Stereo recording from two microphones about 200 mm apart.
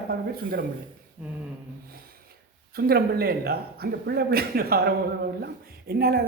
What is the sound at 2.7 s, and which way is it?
Speech, 50° right (ahead or behind).